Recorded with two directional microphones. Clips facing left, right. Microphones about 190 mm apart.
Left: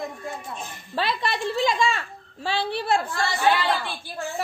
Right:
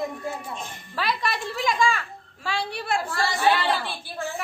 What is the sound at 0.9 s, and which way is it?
A child's voice, 25° left (ahead or behind).